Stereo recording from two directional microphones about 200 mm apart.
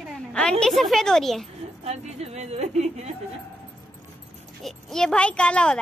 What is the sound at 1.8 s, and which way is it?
A woman's voice, 30° right (ahead or behind).